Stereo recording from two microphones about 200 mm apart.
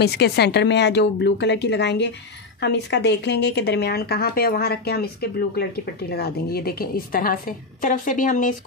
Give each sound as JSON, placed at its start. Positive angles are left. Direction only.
{"t": 0.0, "sound": "a woman's voice", "side_deg": 55}